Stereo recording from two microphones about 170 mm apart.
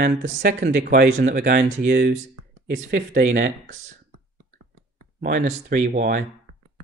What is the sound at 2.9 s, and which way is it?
Speech, 50° right (ahead or behind).